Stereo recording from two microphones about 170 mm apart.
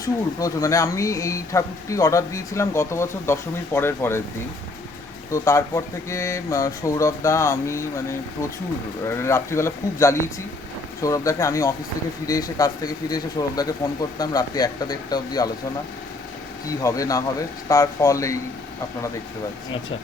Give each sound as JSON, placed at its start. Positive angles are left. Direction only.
{"t": 0.0, "sound": "speech", "side_deg": 20}
{"t": 5.3, "sound": "speech", "side_deg": 20}
{"t": 16.6, "sound": "speech", "side_deg": 20}